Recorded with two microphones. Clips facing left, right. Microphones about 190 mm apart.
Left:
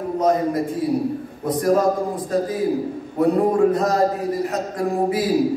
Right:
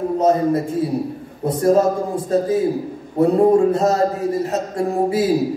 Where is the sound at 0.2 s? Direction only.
30° right (ahead or behind).